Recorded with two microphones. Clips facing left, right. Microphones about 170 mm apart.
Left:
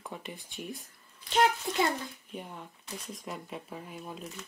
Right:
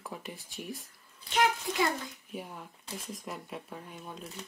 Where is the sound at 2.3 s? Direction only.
5° right (ahead or behind).